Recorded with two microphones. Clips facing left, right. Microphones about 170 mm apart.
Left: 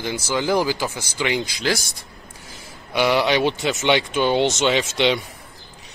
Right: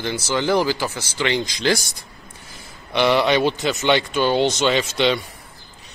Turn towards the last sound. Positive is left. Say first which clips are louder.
# even
turn(degrees=15)  # may be behind; listen again after turning